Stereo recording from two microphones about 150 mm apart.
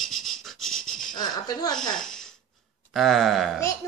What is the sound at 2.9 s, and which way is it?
Speech, centre (ahead or behind).